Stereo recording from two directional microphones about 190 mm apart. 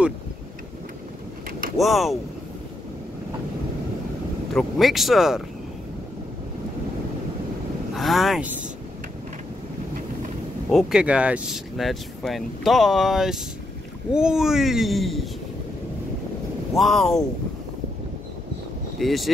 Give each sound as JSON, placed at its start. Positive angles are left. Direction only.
{"t": 1.8, "sound": "speech", "side_deg": 0}
{"t": 4.6, "sound": "speech", "side_deg": 0}
{"t": 7.9, "sound": "speech", "side_deg": 0}
{"t": 10.7, "sound": "speech", "side_deg": 0}
{"t": 16.7, "sound": "speech", "side_deg": 0}
{"t": 18.9, "sound": "speech", "side_deg": 0}